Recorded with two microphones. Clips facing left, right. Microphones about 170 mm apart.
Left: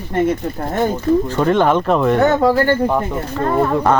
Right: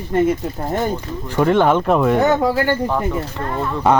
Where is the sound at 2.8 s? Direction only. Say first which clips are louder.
Left 2 dB; 15° left (ahead or behind).